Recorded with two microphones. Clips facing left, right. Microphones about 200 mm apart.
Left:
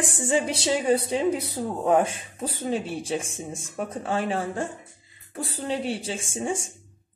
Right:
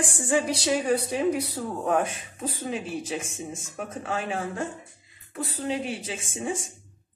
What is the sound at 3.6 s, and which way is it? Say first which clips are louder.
Speech: left 6 dB; 35° left (ahead or behind).